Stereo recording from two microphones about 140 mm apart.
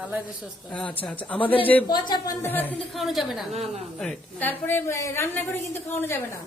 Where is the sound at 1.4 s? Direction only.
40° left (ahead or behind).